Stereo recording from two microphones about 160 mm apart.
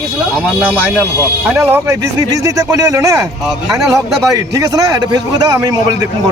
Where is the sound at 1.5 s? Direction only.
15° right (ahead or behind).